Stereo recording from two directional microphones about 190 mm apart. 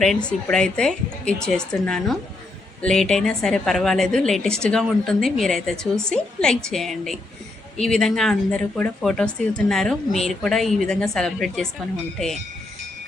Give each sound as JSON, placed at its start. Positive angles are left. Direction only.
{"t": 0.0, "sound": "speech", "side_deg": 5}